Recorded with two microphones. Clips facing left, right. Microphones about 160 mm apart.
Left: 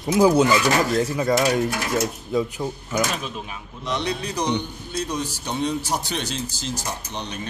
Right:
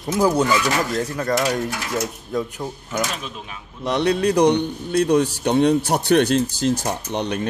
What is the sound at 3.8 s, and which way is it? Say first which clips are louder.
A man's voice: right 8 dB; 60° right (ahead or behind).